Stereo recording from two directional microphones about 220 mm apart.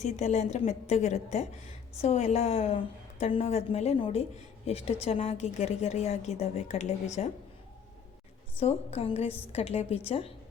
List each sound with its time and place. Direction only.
0.0 s a woman's voice: 30° left (ahead or behind)
8.5 s speech: 30° left (ahead or behind)